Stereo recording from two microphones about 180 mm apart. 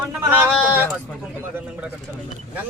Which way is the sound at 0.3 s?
10° right (ahead or behind).